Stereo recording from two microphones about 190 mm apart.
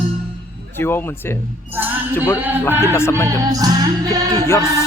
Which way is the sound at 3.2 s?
20° right (ahead or behind).